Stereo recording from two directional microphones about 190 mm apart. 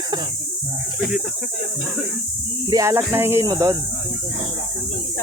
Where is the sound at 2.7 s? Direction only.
15° right (ahead or behind).